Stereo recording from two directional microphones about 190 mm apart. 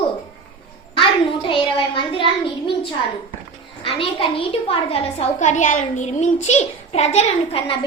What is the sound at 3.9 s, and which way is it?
A woman's voice, 25° left (ahead or behind).